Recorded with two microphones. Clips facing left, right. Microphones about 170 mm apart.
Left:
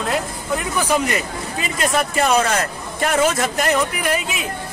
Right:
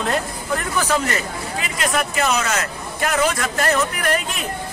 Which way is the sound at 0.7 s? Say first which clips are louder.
Left 2 dB; 10° left (ahead or behind).